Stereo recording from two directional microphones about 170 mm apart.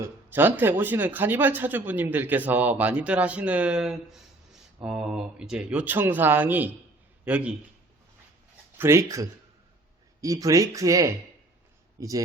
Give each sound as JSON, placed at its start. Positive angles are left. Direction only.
{"t": 0.0, "sound": "speech", "side_deg": -10}
{"t": 8.8, "sound": "speech", "side_deg": -15}